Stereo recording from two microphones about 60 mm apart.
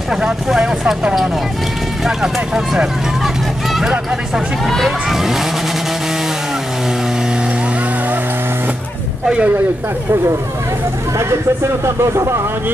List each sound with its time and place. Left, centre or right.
0.1 s speech: centre
4.6 s speech: centre
9.2 s speech: centre
11.8 s speech: right